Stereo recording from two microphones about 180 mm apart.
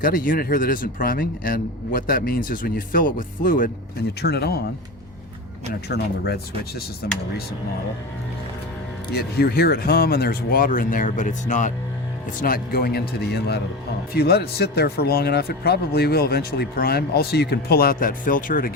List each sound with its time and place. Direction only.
0.0 s a man's voice: 50° left (ahead or behind)
4.2 s speech: 65° left (ahead or behind)
5.9 s speech: 60° left (ahead or behind)
9.1 s speech: 60° left (ahead or behind); by 11.7 s 45° left (ahead or behind)
12.4 s speech: 55° left (ahead or behind)